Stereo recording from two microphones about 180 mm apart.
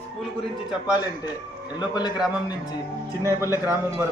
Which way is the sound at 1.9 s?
25° left (ahead or behind).